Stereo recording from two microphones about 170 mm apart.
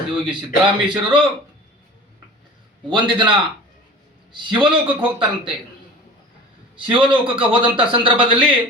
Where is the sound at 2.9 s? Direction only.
25° right (ahead or behind).